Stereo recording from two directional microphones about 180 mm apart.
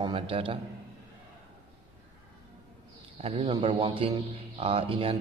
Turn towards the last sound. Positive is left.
turn(degrees=-30)  # may be behind; listen again after turning